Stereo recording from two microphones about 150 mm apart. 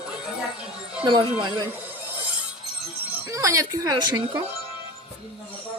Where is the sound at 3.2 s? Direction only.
20° right (ahead or behind).